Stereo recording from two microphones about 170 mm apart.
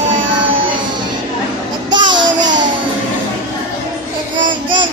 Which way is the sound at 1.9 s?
25° right (ahead or behind).